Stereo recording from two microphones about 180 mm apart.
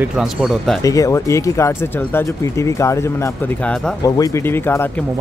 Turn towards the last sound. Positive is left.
turn(degrees=10)  # may be behind; listen again after turning